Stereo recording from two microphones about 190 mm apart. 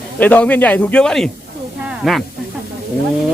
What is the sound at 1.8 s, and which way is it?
Snake, centre (ahead or behind).